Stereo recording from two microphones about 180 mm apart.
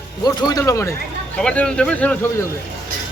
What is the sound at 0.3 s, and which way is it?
Speech, 20° left (ahead or behind).